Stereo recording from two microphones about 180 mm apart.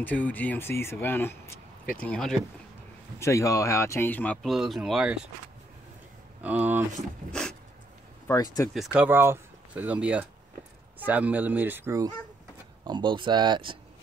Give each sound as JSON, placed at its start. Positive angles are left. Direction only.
{"t": 0.0, "sound": "speech", "side_deg": 10}
{"t": 3.2, "sound": "speech", "side_deg": 15}
{"t": 6.4, "sound": "speech", "side_deg": -10}
{"t": 8.3, "sound": "speech", "side_deg": 20}
{"t": 8.7, "sound": "speech", "side_deg": -5}
{"t": 12.8, "sound": "speech", "side_deg": -25}